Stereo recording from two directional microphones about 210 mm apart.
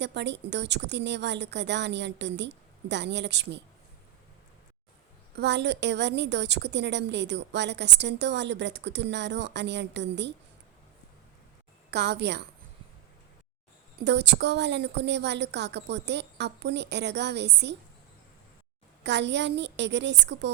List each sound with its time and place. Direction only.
0.0 s a woman's voice: 55° right (ahead or behind)
5.4 s a woman's voice: 55° right (ahead or behind)
11.9 s a woman's voice: 50° right (ahead or behind)
14.0 s a woman's voice: 55° right (ahead or behind)
19.0 s a woman's voice: 55° right (ahead or behind)